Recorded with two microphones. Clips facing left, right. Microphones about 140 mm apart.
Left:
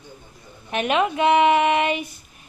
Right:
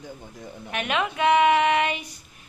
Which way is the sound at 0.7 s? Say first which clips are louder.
Left 6 dB; 25° left (ahead or behind).